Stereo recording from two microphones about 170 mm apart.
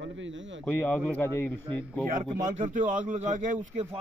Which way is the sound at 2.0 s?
50° right (ahead or behind).